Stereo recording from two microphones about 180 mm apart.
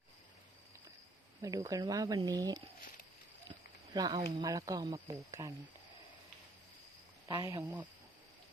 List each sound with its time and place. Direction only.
1.4 s speech: 20° right (ahead or behind)
3.9 s speech: 20° right (ahead or behind)
7.3 s speech: 20° right (ahead or behind)